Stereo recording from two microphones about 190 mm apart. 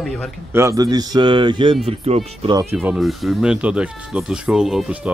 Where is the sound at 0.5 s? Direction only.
15° right (ahead or behind); by 2.5 s 30° right (ahead or behind).